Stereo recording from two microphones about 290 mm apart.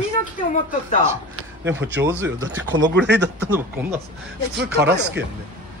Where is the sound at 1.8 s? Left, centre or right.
Right.